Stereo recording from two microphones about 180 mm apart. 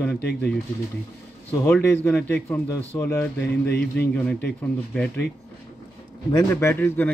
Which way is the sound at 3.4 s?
65° left (ahead or behind).